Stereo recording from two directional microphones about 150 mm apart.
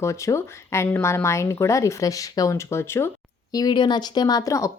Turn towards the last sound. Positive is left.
turn(degrees=20)  # may be behind; listen again after turning